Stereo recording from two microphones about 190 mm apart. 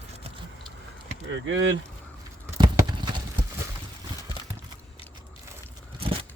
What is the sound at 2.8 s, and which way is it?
Clip-clop, 20° right (ahead or behind).